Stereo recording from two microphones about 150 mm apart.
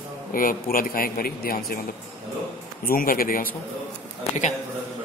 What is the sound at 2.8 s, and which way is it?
Speech, 70° left (ahead or behind).